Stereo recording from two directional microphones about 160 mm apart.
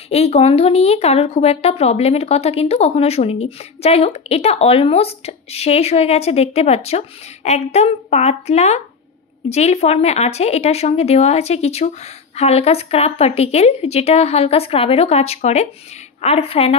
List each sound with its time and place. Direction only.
0.1 s a woman's voice: 40° left (ahead or behind)